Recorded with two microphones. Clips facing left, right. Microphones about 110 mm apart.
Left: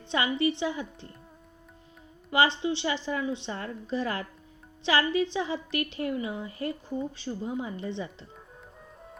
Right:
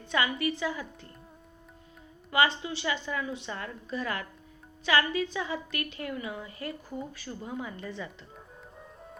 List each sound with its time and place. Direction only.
0.1 s a woman's voice: 30° left (ahead or behind)
2.3 s a woman's voice: 30° left (ahead or behind)